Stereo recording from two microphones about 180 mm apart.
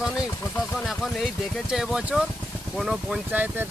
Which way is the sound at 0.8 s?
Centre (ahead or behind).